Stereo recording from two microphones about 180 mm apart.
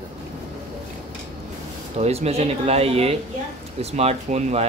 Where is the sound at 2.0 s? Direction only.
35° right (ahead or behind).